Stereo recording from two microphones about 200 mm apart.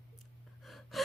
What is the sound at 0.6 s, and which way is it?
Gasp, centre (ahead or behind).